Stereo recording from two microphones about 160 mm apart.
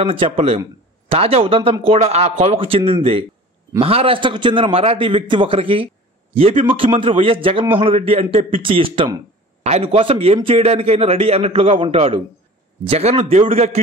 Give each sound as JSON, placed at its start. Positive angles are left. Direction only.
{"t": 0.0, "sound": "a man's voice", "side_deg": -35}
{"t": 9.6, "sound": "a man's voice", "side_deg": -40}